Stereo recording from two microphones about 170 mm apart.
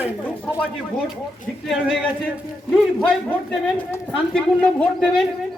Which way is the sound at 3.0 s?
5° left (ahead or behind).